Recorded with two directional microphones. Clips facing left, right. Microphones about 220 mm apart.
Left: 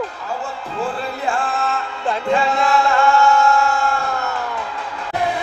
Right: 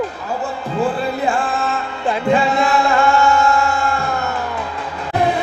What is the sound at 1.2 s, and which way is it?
Music, 15° right (ahead or behind).